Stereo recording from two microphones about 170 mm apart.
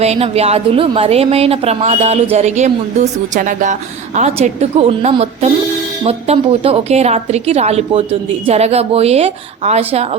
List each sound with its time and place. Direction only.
0.0 s a woman's voice: 40° right (ahead or behind)